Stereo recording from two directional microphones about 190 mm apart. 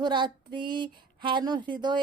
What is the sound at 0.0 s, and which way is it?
Speech, 25° right (ahead or behind).